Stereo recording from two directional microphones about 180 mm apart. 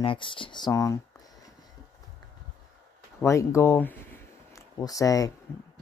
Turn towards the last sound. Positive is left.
turn(degrees=20)  # may be behind; listen again after turning